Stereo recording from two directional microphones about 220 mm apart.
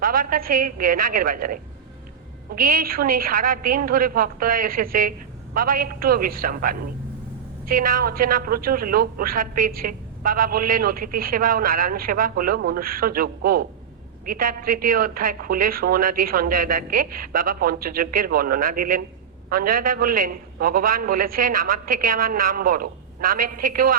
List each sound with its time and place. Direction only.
0.0 s a man's voice: 40° right (ahead or behind)